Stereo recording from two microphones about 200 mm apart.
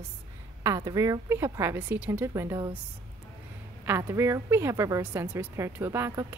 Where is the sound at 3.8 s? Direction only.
10° right (ahead or behind).